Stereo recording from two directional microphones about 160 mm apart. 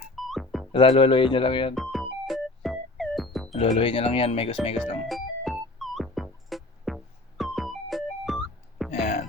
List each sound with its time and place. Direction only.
0.2 s music: centre (ahead or behind)
0.7 s speech: 35° left (ahead or behind)
1.7 s music: centre (ahead or behind)
3.8 s speech: 35° left (ahead or behind)
4.8 s music: centre (ahead or behind)
8.9 s a sound: 45° left (ahead or behind)